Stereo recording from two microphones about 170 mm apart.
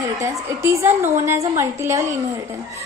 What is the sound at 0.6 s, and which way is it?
A woman's voice, 15° right (ahead or behind).